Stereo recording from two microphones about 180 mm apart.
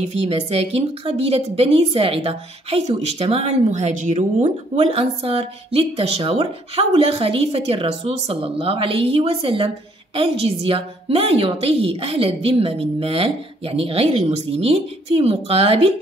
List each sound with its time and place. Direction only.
0.1 s a woman's voice: 35° right (ahead or behind)